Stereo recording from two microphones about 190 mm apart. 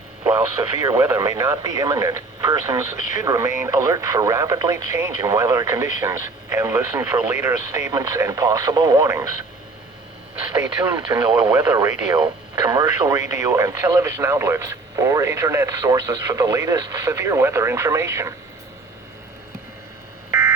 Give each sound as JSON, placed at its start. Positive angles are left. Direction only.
{"t": 0.3, "sound": "speech", "side_deg": -15}
{"t": 11.1, "sound": "speech", "side_deg": -20}